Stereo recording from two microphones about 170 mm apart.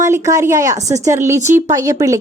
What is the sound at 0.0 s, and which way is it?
Speech, 20° right (ahead or behind).